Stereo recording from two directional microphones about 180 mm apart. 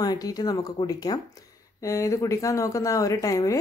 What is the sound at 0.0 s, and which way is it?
A woman's voice, 20° left (ahead or behind).